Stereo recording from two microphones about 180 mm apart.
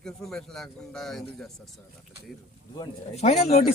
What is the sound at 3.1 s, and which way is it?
Speech, 35° left (ahead or behind).